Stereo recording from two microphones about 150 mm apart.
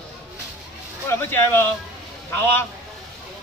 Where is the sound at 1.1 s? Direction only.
15° left (ahead or behind).